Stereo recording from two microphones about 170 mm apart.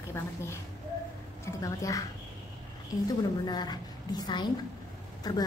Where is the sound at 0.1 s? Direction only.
15° left (ahead or behind).